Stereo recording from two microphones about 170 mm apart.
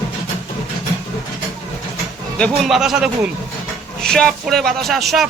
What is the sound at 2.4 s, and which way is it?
Speech, centre (ahead or behind).